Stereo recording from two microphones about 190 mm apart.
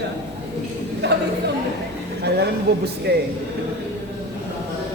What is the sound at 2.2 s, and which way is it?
Speech, 60° right (ahead or behind).